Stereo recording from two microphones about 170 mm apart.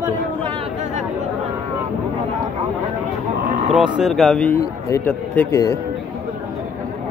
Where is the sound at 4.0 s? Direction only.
Centre (ahead or behind); by 5.7 s 15° left (ahead or behind).